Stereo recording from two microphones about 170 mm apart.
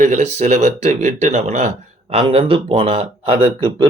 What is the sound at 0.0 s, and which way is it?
Speech, 40° right (ahead or behind).